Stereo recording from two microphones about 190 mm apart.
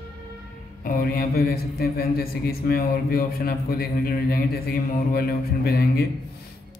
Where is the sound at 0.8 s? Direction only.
55° left (ahead or behind).